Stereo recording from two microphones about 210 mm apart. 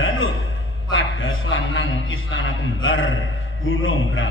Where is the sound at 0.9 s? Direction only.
70° left (ahead or behind).